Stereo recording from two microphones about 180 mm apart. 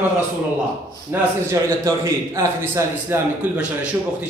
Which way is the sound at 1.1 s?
10° right (ahead or behind).